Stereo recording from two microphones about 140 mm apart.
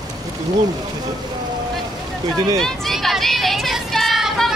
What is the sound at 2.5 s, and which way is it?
Speech, centre (ahead or behind).